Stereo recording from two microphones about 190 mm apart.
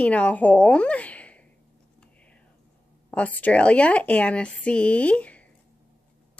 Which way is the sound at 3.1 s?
5° left (ahead or behind).